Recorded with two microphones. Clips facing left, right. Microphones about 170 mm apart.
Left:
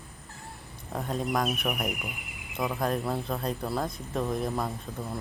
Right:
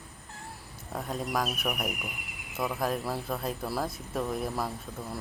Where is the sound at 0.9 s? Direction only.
Centre (ahead or behind).